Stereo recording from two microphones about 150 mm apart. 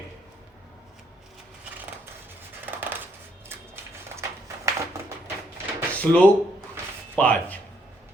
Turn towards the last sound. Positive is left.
turn(degrees=10)  # may be behind; listen again after turning